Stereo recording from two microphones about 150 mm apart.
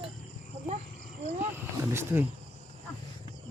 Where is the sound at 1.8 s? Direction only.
15° right (ahead or behind).